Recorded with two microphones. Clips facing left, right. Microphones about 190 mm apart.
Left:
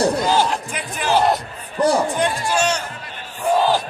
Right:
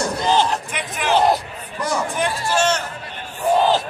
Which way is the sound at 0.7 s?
30° left (ahead or behind).